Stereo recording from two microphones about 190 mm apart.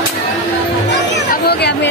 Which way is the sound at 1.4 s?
60° left (ahead or behind).